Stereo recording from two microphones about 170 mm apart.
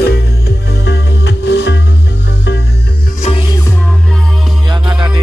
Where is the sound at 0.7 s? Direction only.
75° left (ahead or behind).